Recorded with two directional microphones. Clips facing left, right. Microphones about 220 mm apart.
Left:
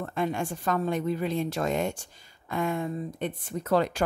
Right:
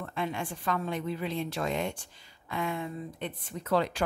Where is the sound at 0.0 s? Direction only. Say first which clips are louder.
Left 5 dB; 45° left (ahead or behind).